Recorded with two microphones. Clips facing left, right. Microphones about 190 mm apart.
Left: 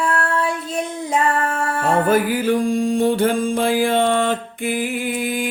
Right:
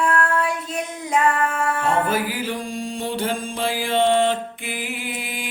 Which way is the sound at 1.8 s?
50° left (ahead or behind).